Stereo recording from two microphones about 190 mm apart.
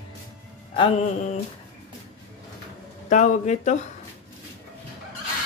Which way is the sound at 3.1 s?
40° left (ahead or behind).